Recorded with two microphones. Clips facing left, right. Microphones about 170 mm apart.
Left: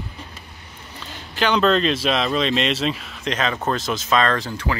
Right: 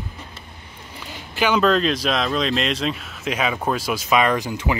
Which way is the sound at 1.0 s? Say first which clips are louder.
Right 1 dB; 10° right (ahead or behind).